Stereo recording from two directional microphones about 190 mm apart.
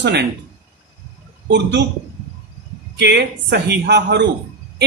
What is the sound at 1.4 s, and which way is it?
Speech, 65° right (ahead or behind).